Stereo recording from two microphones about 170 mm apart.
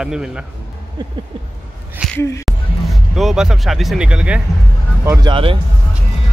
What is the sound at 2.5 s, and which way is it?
Speech, centre (ahead or behind).